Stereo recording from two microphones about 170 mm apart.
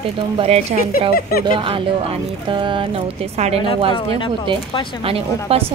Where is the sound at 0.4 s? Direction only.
40° right (ahead or behind).